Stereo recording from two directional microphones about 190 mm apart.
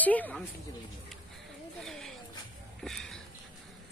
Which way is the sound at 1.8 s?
Centre (ahead or behind).